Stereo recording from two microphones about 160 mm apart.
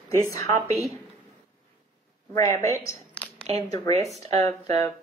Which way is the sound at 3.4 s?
40° right (ahead or behind).